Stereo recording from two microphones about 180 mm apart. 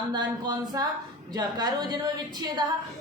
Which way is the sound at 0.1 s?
25° right (ahead or behind).